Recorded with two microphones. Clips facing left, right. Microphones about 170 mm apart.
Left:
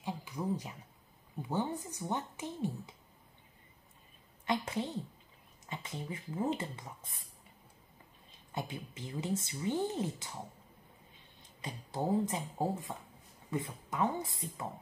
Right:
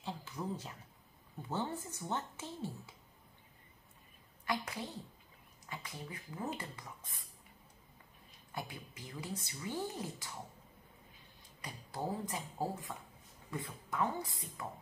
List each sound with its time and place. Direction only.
0.0 s a sound: 15° left (ahead or behind)
1.5 s speech: 15° left (ahead or behind)
4.5 s a woman's voice: 20° left (ahead or behind)
8.3 s speech: 20° left (ahead or behind)
11.6 s speech: 25° left (ahead or behind)